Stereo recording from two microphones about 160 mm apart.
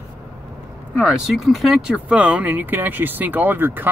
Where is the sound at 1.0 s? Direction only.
5° right (ahead or behind).